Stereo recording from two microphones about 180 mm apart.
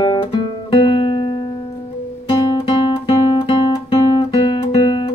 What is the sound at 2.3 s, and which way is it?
Guitar, 30° left (ahead or behind).